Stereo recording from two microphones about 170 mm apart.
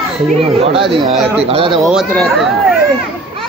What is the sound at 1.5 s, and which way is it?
Speech, 30° right (ahead or behind).